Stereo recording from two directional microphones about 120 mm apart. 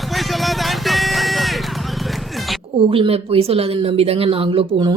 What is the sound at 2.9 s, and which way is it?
Speech, 50° right (ahead or behind).